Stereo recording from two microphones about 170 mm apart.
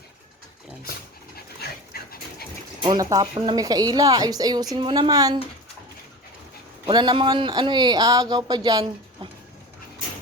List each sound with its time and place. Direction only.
1.6 s dog: 70° left (ahead or behind)
2.8 s speech: 20° right (ahead or behind)
6.8 s speech: 25° right (ahead or behind)